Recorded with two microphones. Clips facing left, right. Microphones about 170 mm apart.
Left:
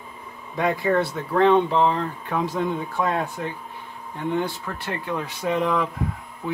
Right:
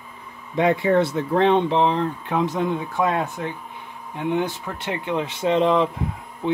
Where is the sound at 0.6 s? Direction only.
25° right (ahead or behind).